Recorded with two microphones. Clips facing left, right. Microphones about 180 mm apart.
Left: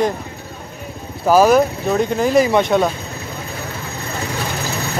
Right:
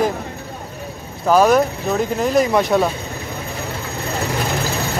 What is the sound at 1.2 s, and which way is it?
Speech, 5° left (ahead or behind).